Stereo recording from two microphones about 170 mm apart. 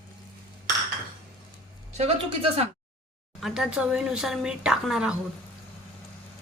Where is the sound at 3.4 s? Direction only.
5° right (ahead or behind).